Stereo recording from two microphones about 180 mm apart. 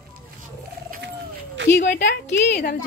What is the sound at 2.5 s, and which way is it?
Speech, 55° left (ahead or behind).